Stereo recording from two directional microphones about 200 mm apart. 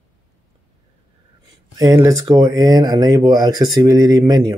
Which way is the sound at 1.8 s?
15° right (ahead or behind).